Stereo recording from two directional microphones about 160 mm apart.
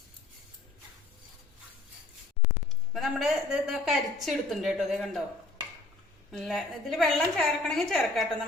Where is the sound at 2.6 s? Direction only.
Centre (ahead or behind).